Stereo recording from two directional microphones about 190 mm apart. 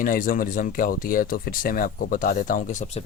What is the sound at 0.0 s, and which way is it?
Speech, 45° left (ahead or behind).